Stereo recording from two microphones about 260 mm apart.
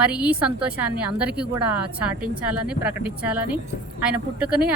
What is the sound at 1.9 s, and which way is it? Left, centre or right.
A woman's voice, centre.